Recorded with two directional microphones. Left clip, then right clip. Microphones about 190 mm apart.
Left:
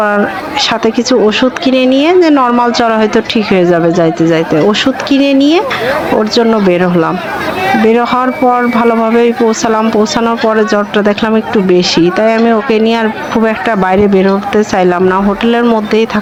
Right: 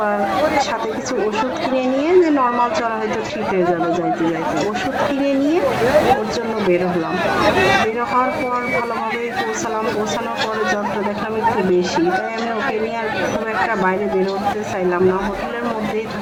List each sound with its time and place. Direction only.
1.7 s a woman's voice: 40° left (ahead or behind)